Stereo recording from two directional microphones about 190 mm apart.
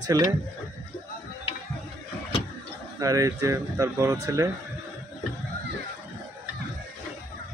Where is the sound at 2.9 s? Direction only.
15° right (ahead or behind).